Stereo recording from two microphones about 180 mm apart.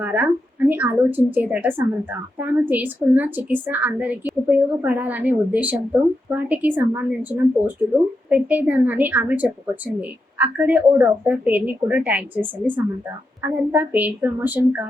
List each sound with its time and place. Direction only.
0.0 s speech: 10° right (ahead or behind)